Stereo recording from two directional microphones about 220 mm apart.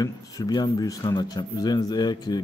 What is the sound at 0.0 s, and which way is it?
A man's voice, 15° left (ahead or behind).